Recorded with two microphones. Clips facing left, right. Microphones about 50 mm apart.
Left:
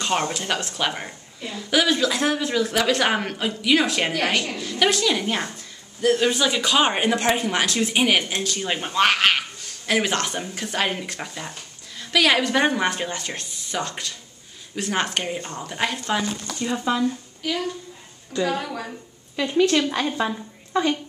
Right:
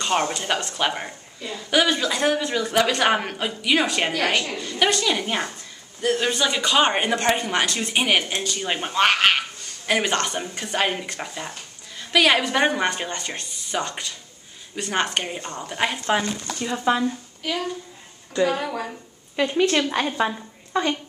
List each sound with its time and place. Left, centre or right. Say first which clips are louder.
0.0 s speech: right 1 dB; centre
16.8 s speech: right 2 dB; right
17.4 s a woman's voice: even; centre